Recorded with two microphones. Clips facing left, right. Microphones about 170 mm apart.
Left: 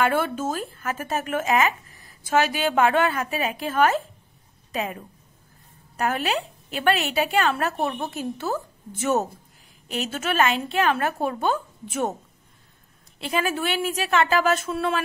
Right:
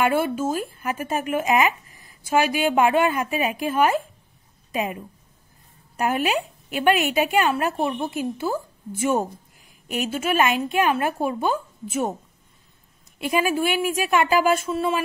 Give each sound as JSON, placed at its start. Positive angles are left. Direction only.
{"t": 0.2, "sound": "a woman's voice", "side_deg": -10}
{"t": 5.9, "sound": "a woman's voice", "side_deg": -15}
{"t": 13.2, "sound": "a woman's voice", "side_deg": -10}